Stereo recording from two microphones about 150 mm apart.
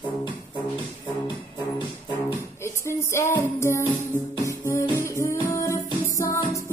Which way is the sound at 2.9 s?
15° left (ahead or behind).